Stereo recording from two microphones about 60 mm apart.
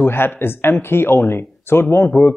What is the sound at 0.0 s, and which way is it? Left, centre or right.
Speech, left.